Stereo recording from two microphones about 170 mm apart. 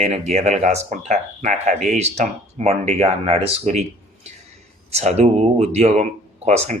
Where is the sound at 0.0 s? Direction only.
40° right (ahead or behind).